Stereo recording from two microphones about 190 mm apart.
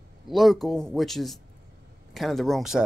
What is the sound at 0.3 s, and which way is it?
Speech, centre (ahead or behind).